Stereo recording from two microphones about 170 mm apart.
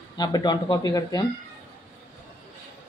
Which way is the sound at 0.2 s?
25° left (ahead or behind).